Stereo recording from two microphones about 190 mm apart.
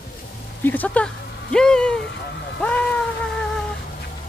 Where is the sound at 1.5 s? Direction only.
5° left (ahead or behind).